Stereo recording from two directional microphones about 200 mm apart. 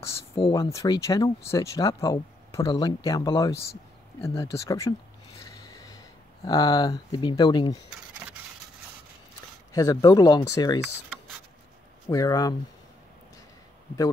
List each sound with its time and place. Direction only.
0.4 s speech: 15° left (ahead or behind)
5.4 s a sound: 20° left (ahead or behind)
6.4 s speech: 20° left (ahead or behind)
9.7 s speech: 15° left (ahead or behind)
12.1 s speech: 20° left (ahead or behind)